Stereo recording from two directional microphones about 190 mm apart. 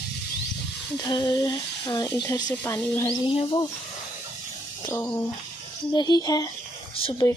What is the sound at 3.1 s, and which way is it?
Speech, 30° left (ahead or behind).